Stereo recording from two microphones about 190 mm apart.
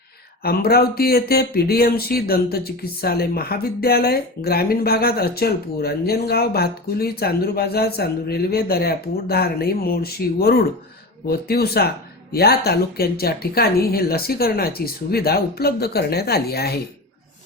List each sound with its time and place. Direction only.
0.4 s speech: 55° left (ahead or behind)